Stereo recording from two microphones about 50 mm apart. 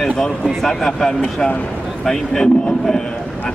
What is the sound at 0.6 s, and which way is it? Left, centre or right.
Speech, centre.